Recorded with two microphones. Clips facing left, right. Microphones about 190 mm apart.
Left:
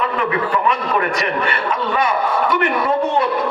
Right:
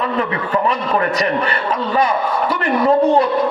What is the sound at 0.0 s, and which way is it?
A man's voice, 30° right (ahead or behind).